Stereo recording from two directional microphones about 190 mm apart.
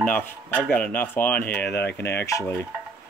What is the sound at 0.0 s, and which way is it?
Speech, 10° left (ahead or behind).